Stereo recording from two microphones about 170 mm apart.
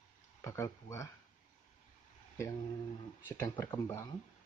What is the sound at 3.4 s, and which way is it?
Speech, 15° left (ahead or behind).